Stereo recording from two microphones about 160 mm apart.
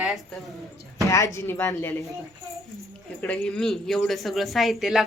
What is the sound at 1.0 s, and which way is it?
Speech, 20° left (ahead or behind).